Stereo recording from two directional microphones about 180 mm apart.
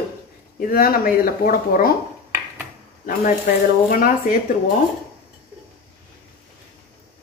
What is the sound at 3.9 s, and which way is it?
Speech, 50° left (ahead or behind).